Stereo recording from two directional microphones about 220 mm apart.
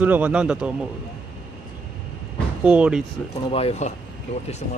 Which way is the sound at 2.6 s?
5° right (ahead or behind).